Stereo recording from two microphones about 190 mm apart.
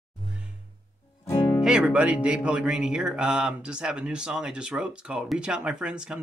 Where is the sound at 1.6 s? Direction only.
5° right (ahead or behind).